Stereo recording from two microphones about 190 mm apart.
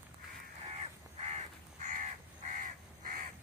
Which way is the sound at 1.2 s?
35° right (ahead or behind).